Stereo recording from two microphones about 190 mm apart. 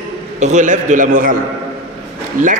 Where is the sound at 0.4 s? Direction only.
40° right (ahead or behind).